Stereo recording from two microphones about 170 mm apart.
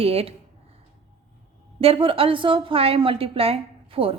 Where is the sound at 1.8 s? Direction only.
35° right (ahead or behind).